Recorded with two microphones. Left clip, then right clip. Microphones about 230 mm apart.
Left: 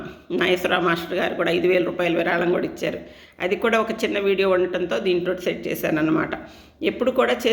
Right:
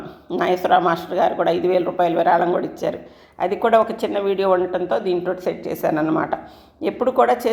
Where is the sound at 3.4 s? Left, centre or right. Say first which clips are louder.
Right 4 dB; left.